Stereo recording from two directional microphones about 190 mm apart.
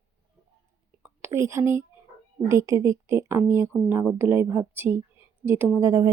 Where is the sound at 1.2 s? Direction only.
15° right (ahead or behind).